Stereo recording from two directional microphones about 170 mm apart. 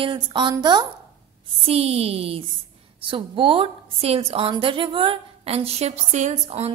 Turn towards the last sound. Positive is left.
turn(degrees=-35)  # may be behind; listen again after turning